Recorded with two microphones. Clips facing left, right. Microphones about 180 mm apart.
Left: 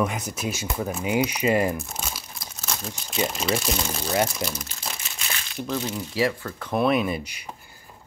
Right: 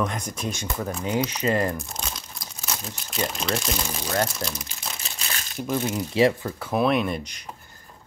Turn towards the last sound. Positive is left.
turn(degrees=10)  # may be behind; listen again after turning